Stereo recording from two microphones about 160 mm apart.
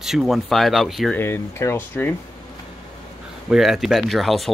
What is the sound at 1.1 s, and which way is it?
Speech, 15° left (ahead or behind).